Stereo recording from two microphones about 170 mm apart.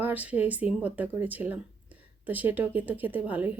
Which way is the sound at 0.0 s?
10° right (ahead or behind).